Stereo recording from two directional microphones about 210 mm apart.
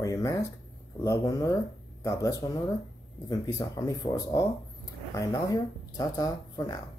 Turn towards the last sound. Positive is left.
turn(degrees=15)  # may be behind; listen again after turning